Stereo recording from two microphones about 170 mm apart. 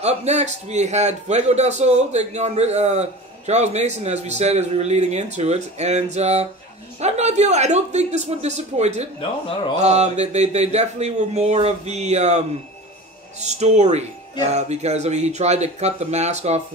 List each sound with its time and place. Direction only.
0.0 s a man's voice: 40° right (ahead or behind)